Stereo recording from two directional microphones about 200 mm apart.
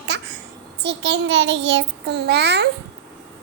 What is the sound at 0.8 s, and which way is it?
A child's voice, 60° right (ahead or behind).